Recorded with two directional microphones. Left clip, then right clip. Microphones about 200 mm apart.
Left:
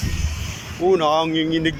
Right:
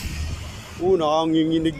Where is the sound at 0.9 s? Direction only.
15° right (ahead or behind).